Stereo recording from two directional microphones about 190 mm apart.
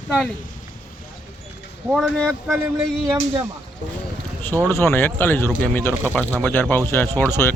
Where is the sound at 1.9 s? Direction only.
Centre (ahead or behind).